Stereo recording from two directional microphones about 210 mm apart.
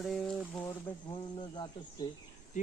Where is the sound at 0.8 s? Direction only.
20° left (ahead or behind).